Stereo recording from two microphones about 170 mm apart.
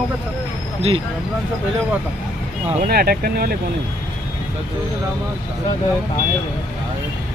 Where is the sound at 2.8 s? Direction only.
65° right (ahead or behind).